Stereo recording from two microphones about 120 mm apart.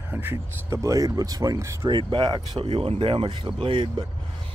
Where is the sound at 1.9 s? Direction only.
40° right (ahead or behind).